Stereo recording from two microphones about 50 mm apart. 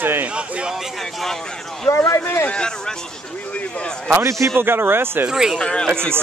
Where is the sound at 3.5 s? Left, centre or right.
Left.